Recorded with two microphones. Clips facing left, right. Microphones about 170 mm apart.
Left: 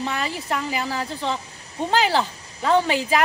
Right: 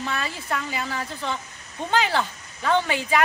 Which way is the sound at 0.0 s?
35° left (ahead or behind).